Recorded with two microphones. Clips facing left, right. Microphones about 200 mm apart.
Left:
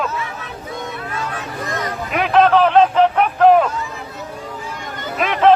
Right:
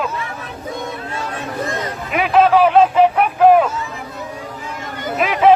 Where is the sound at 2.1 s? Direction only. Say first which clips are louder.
Right 1 dB; 5° right (ahead or behind).